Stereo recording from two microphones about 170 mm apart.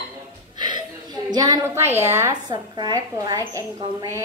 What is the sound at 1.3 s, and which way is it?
A woman's voice, 20° right (ahead or behind).